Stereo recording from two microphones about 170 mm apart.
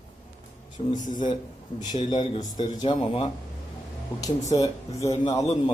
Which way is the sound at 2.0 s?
25° left (ahead or behind).